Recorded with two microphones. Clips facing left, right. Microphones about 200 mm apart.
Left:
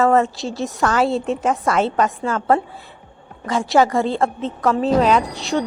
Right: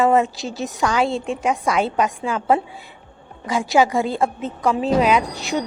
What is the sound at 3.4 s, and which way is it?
A woman's voice, centre (ahead or behind).